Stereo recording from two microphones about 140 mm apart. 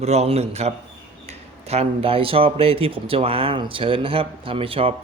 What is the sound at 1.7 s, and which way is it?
Speech, 45° right (ahead or behind).